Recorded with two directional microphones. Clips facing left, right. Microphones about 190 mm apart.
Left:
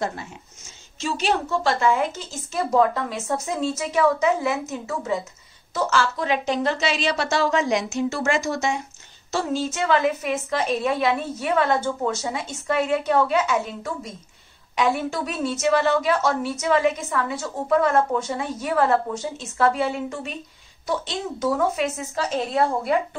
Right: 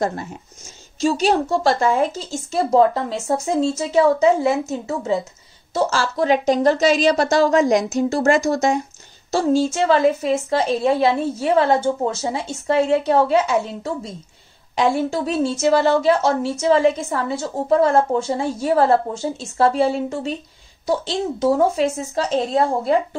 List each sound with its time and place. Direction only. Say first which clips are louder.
0.0 s a woman's voice: right 5 dB; 40° right (ahead or behind)